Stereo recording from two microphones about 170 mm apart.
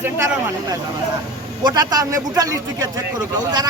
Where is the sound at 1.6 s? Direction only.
20° right (ahead or behind).